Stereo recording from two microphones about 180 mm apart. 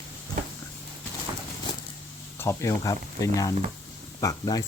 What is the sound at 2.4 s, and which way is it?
Speech, 15° left (ahead or behind).